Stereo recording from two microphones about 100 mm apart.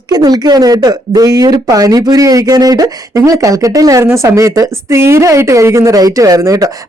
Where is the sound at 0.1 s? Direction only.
40° right (ahead or behind).